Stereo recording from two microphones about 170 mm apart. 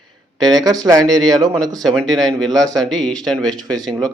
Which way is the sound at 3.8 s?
5° left (ahead or behind).